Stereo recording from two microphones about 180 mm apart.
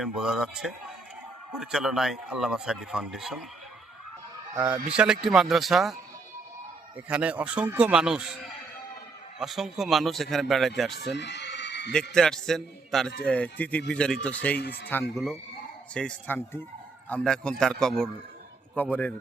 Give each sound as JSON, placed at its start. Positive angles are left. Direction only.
{"t": 0.0, "sound": "speech", "side_deg": -5}
{"t": 4.5, "sound": "speech", "side_deg": -10}
{"t": 9.4, "sound": "speech", "side_deg": 0}
{"t": 11.1, "sound": "neigh", "side_deg": 70}
{"t": 12.1, "sound": "speech", "side_deg": 5}